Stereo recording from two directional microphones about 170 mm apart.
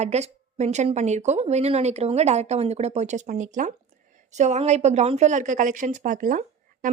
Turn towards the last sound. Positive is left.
turn(degrees=-50)  # may be behind; listen again after turning